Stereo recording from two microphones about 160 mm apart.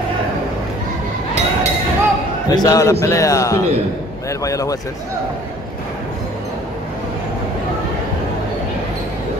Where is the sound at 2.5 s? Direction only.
25° left (ahead or behind).